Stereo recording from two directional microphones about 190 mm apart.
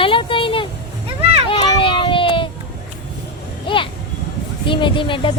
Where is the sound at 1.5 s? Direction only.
25° left (ahead or behind).